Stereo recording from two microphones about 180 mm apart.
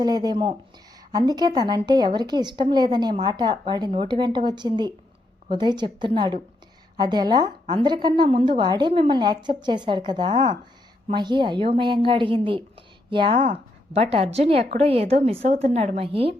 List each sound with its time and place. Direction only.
0.0 s a woman's voice: 20° right (ahead or behind)